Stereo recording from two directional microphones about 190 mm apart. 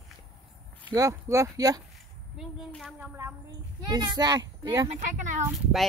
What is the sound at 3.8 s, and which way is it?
A child's voice, 20° right (ahead or behind).